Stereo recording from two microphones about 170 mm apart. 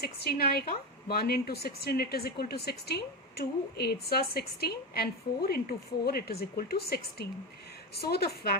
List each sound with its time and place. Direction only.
0.0 s speech: 65° left (ahead or behind)